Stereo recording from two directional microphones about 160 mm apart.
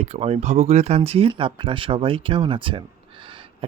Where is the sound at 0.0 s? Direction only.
40° right (ahead or behind).